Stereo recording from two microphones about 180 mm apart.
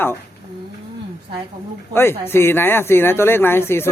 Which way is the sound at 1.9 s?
15° left (ahead or behind).